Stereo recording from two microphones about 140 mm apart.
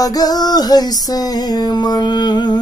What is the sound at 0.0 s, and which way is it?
Speech, 25° left (ahead or behind).